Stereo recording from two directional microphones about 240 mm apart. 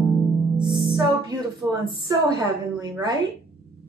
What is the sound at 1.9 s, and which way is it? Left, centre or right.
A woman's voice, centre.